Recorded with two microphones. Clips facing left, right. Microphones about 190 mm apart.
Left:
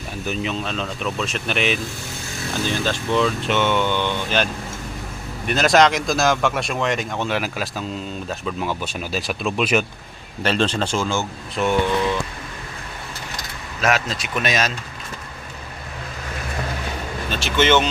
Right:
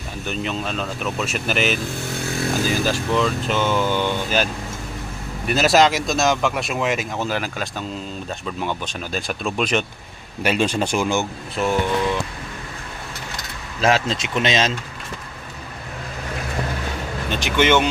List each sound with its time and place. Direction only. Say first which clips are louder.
0.3 s speech: even; centre (ahead or behind)
5.5 s speech: even; 5° right (ahead or behind)
10.4 s speech: right 1 dB; 10° right (ahead or behind)
11.5 s speech: left 1 dB; centre (ahead or behind)
13.8 s speech: right 2 dB; 25° right (ahead or behind)
17.2 s speech: even; 15° right (ahead or behind)